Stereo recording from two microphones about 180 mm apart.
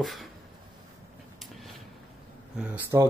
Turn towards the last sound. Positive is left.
turn(degrees=-10)  # may be behind; listen again after turning